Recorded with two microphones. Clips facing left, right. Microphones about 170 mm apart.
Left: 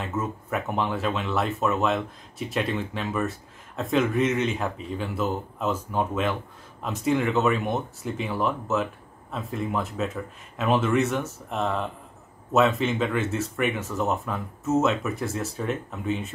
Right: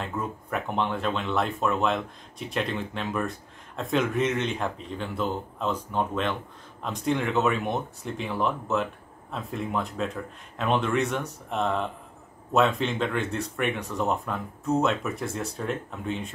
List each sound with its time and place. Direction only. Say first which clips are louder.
0.0 s speech: left 2 dB; 5° left (ahead or behind)